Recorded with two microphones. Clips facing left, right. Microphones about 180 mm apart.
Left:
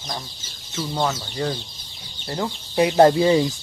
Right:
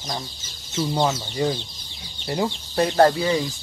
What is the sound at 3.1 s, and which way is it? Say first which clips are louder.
Speech: left 5 dB; 25° left (ahead or behind).